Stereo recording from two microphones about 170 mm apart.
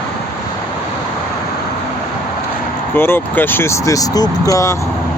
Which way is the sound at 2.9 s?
15° left (ahead or behind).